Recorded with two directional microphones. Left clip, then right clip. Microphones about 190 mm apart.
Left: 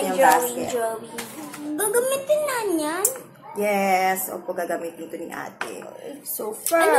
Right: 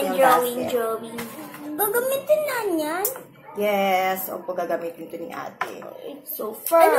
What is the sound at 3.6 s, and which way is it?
Speech, 25° left (ahead or behind).